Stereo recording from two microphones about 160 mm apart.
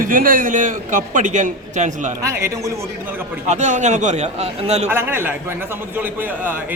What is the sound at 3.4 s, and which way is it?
A man's voice, 50° right (ahead or behind).